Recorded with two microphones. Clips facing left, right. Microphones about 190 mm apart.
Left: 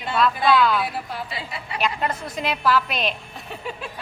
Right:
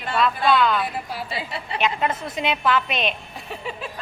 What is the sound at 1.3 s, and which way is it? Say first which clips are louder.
Speech: right 3 dB; 30° right (ahead or behind).